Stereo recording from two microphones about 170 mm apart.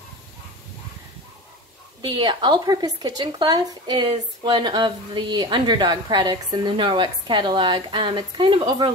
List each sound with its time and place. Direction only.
2.0 s speech: 25° right (ahead or behind)